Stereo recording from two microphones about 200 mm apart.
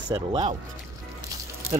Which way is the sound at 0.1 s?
25° right (ahead or behind).